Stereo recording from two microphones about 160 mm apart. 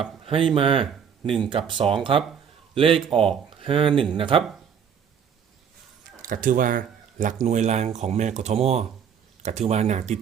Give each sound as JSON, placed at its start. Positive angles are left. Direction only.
{"t": 0.3, "sound": "speech", "side_deg": -35}
{"t": 6.2, "sound": "speech", "side_deg": -55}